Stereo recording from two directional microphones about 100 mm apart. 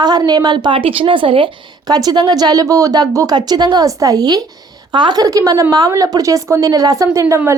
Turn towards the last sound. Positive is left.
turn(degrees=-25)  # may be behind; listen again after turning